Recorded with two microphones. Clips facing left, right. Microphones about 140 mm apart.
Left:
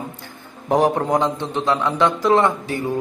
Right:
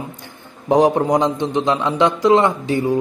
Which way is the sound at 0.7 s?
20° right (ahead or behind).